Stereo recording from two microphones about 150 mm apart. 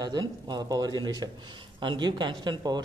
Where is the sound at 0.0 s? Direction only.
25° right (ahead or behind).